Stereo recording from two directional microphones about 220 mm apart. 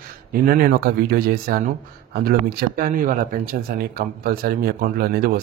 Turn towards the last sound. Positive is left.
turn(degrees=-45)  # may be behind; listen again after turning